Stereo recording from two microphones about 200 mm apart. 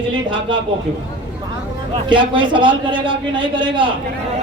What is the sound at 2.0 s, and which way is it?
A man's voice, 25° right (ahead or behind).